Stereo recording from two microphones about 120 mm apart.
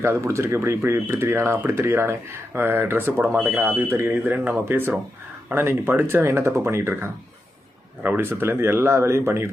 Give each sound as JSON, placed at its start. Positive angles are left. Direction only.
{"t": 0.0, "sound": "speech", "side_deg": -20}